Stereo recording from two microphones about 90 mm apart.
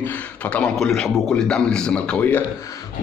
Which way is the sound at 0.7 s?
5° left (ahead or behind).